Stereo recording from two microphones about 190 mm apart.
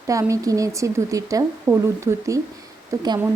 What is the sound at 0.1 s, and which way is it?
A woman's voice, 15° right (ahead or behind).